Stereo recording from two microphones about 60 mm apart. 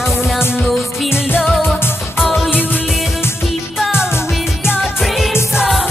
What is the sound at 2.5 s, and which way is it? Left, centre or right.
Music, left.